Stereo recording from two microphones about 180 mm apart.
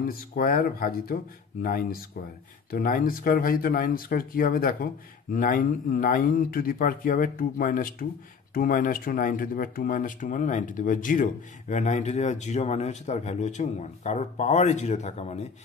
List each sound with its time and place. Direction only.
0.0 s speech: 50° left (ahead or behind)